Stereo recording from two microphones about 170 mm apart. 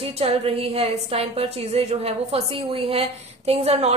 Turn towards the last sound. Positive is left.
turn(degrees=-40)  # may be behind; listen again after turning